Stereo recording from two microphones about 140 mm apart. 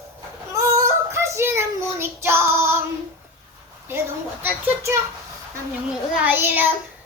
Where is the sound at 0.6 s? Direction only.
20° right (ahead or behind).